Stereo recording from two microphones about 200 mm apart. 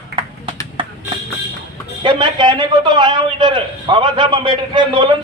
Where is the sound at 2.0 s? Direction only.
25° right (ahead or behind).